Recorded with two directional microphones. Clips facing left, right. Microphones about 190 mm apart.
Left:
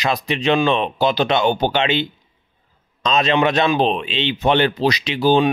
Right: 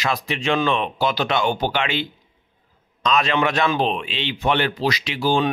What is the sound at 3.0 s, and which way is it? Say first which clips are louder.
Speech: left 3 dB; 20° left (ahead or behind).